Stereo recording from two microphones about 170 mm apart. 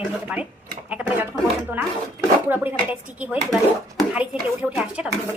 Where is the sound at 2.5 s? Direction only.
10° right (ahead or behind).